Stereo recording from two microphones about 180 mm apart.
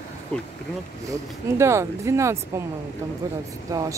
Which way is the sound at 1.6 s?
15° right (ahead or behind).